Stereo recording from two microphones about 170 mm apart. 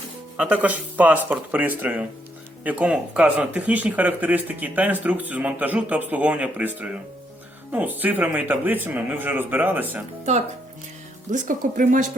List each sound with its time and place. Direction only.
0.3 s speech: 10° right (ahead or behind)
10.3 s speech: 45° right (ahead or behind)